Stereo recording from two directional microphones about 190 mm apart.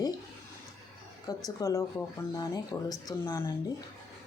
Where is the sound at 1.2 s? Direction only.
20° left (ahead or behind).